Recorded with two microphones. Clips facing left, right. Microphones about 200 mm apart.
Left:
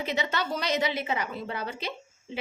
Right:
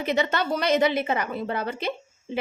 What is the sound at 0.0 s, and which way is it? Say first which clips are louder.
A woman's voice: right 5 dB; 55° right (ahead or behind).